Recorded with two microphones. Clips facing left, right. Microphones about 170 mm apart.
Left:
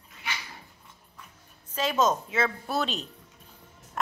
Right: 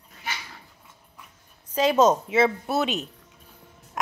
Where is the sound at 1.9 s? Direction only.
30° right (ahead or behind).